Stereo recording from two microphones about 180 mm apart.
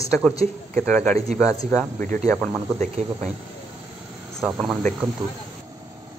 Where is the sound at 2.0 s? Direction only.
45° right (ahead or behind).